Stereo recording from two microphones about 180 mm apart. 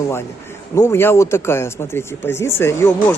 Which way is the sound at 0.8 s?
15° left (ahead or behind).